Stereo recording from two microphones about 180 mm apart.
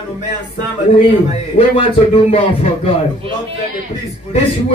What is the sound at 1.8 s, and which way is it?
Speech, 30° left (ahead or behind).